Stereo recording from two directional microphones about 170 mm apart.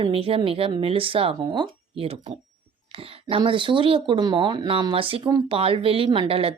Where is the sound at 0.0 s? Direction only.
35° right (ahead or behind).